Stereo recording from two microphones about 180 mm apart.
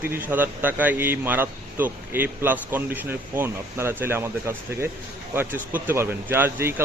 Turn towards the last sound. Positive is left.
turn(degrees=-15)  # may be behind; listen again after turning